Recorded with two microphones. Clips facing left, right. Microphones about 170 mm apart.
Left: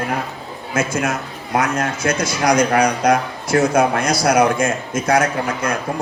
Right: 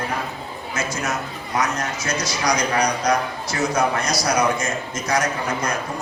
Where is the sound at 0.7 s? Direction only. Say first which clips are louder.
Left 6 dB; 55° left (ahead or behind).